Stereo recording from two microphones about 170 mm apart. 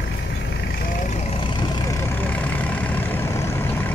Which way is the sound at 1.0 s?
40° left (ahead or behind).